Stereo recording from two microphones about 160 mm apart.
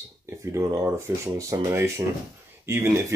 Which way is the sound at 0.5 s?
20° right (ahead or behind).